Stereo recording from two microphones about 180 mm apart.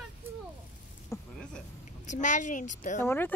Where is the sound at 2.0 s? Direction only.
45° left (ahead or behind).